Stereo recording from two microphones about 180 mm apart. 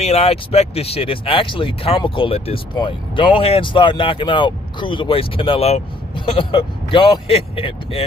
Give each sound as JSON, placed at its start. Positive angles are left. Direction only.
{"t": 0.0, "sound": "speech", "side_deg": 35}